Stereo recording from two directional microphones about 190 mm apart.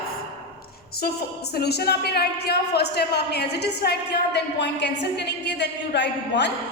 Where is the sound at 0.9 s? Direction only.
55° left (ahead or behind).